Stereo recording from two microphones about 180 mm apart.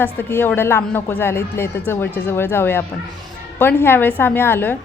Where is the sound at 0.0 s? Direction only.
10° left (ahead or behind).